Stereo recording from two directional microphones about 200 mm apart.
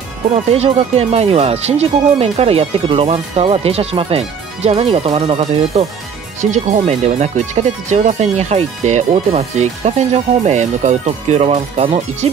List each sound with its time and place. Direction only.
0.5 s speech: 30° right (ahead or behind)